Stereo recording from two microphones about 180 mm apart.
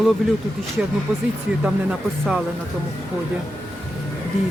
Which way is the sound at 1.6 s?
5° right (ahead or behind).